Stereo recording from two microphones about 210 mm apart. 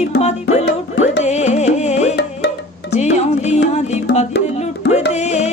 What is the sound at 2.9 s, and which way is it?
Music, 35° left (ahead or behind).